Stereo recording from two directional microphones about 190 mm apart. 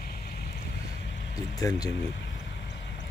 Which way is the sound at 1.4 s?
20° left (ahead or behind).